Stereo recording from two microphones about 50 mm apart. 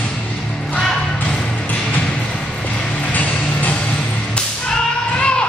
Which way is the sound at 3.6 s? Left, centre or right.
Left.